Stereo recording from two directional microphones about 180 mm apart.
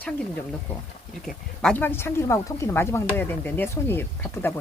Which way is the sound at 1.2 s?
5° left (ahead or behind).